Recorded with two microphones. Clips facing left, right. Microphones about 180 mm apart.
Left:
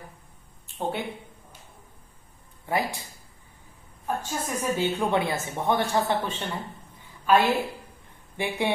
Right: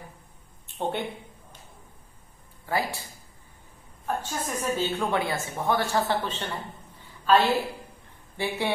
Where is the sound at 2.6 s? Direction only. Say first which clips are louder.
Left 1 dB; 20° left (ahead or behind).